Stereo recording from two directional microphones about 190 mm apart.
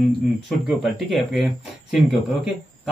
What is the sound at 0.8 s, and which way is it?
Speech, centre (ahead or behind).